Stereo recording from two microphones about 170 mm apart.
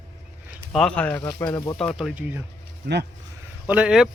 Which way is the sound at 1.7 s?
5° left (ahead or behind).